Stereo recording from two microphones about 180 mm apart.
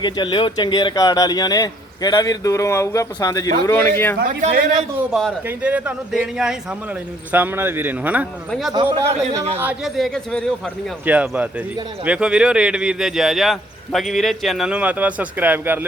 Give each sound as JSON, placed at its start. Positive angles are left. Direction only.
{"t": 0.0, "sound": "a man's voice", "side_deg": 25}
{"t": 4.2, "sound": "speech", "side_deg": -45}
{"t": 4.9, "sound": "a man's voice", "side_deg": -5}
{"t": 8.7, "sound": "speech", "side_deg": -20}
{"t": 9.6, "sound": "a man's voice", "side_deg": -5}